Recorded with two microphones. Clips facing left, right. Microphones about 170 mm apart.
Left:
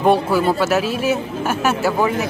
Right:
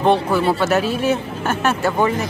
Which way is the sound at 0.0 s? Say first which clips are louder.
Left 1 dB; 10° left (ahead or behind).